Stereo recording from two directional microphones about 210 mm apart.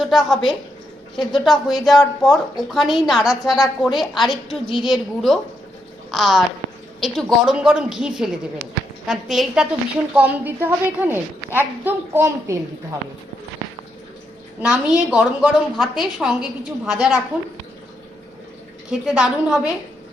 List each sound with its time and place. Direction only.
0.0 s a woman's voice: centre (ahead or behind)
14.6 s a woman's voice: 5° right (ahead or behind)
18.9 s a woman's voice: 5° right (ahead or behind)